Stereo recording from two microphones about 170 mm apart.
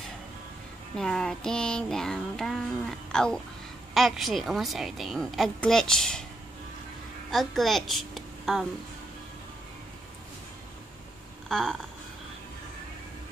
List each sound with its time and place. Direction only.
0.9 s music: 5° left (ahead or behind)
3.9 s a woman's voice: centre (ahead or behind)
7.2 s a woman's voice: centre (ahead or behind)
11.4 s a sound: 5° left (ahead or behind)